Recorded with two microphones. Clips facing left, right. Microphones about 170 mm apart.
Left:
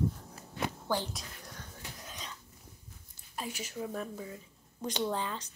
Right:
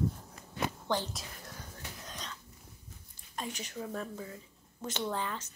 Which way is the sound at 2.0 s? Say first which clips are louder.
Right 1 dB; 5° left (ahead or behind).